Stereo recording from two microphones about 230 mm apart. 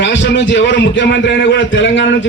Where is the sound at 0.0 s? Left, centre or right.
Left.